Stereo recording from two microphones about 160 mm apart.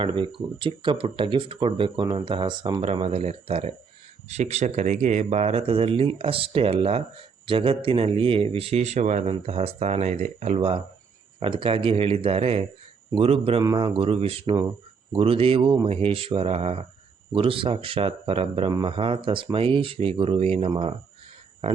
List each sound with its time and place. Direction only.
0.0 s speech: 35° right (ahead or behind)
2.8 s speech: 40° right (ahead or behind)
13.6 s speech: 25° right (ahead or behind)